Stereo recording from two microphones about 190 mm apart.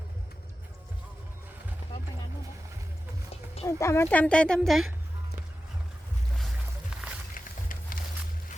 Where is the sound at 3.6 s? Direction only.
15° left (ahead or behind).